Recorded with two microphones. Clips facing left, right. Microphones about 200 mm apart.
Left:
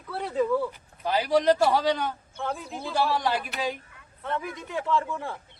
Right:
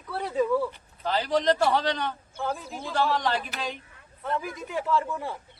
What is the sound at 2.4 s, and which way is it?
Speech, centre (ahead or behind).